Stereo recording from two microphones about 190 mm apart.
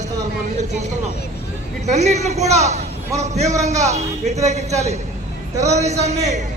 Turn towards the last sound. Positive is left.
turn(degrees=-35)  # may be behind; listen again after turning